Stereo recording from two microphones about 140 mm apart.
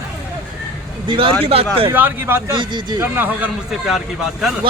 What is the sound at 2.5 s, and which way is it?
Speech, 35° right (ahead or behind).